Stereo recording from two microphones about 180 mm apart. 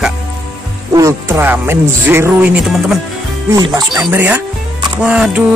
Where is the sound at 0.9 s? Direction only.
15° right (ahead or behind).